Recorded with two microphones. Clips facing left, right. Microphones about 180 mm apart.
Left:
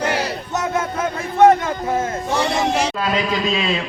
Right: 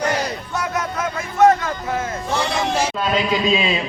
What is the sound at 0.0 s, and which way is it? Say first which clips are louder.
Battle cry: even; 10° left (ahead or behind).